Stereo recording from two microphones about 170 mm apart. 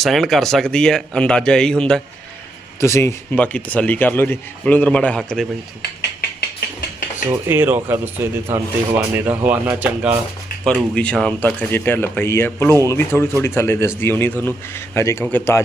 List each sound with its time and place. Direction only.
0.0 s speech: centre (ahead or behind)
2.8 s speech: 15° left (ahead or behind)
7.3 s speech: 15° right (ahead or behind)
10.7 s speech: 5° left (ahead or behind)